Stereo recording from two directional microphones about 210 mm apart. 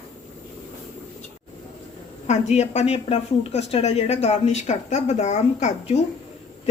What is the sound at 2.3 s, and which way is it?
Speech, 30° left (ahead or behind).